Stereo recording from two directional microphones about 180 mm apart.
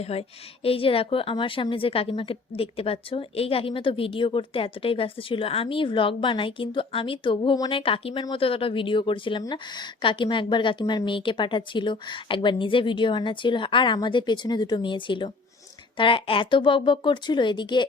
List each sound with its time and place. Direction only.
0.0 s a woman's voice: 35° left (ahead or behind)